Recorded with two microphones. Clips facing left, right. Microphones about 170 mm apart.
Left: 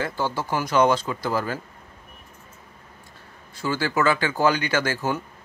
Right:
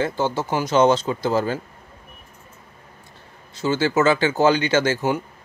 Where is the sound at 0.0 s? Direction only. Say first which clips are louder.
Right 4 dB; 25° right (ahead or behind).